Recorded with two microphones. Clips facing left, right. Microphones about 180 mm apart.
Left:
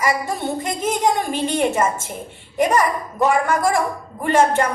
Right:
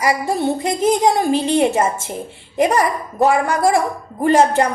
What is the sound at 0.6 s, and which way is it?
A woman's voice, 35° right (ahead or behind).